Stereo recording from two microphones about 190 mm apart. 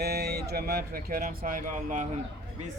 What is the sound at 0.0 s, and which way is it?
Speech, 55° right (ahead or behind).